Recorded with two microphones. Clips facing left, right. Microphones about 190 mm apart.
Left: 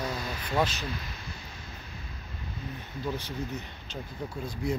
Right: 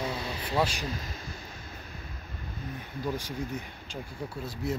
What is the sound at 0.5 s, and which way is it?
Speech, 10° right (ahead or behind).